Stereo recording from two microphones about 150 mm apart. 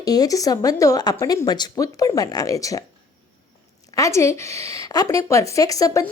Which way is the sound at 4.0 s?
20° left (ahead or behind).